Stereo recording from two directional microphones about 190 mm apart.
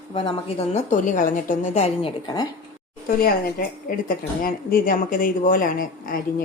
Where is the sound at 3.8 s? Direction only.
50° left (ahead or behind).